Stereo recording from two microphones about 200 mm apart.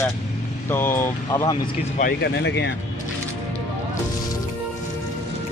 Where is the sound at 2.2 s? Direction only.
60° left (ahead or behind).